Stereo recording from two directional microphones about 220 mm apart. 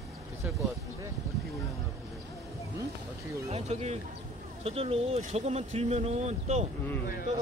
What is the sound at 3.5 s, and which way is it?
Speech, 30° right (ahead or behind).